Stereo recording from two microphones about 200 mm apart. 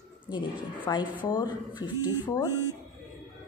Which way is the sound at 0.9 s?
15° left (ahead or behind).